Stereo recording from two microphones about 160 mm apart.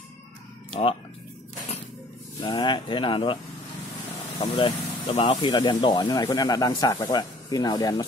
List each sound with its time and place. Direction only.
2.4 s speech: 30° left (ahead or behind)
4.4 s speech: 35° left (ahead or behind)